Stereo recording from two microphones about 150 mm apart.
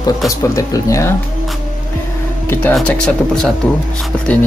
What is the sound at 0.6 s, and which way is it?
Speech, 20° left (ahead or behind).